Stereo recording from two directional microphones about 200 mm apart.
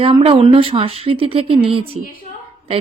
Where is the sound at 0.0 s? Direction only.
25° right (ahead or behind).